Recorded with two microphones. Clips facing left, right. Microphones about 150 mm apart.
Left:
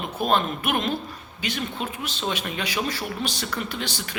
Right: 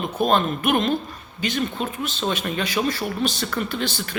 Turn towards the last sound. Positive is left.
turn(degrees=15)  # may be behind; listen again after turning